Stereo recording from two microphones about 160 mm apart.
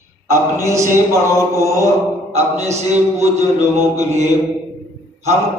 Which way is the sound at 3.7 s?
15° right (ahead or behind).